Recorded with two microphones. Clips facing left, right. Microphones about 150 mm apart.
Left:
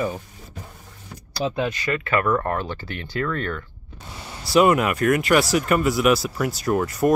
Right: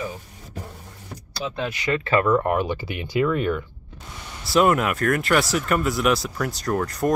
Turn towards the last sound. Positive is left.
turn(degrees=5)  # may be behind; listen again after turning